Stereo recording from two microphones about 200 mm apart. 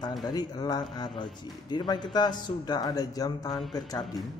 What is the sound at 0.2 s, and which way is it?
A man's voice, 20° left (ahead or behind).